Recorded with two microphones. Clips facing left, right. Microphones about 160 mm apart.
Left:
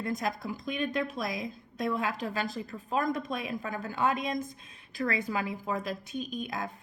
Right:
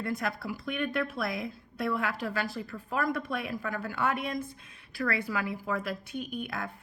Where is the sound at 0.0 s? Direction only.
20° left (ahead or behind).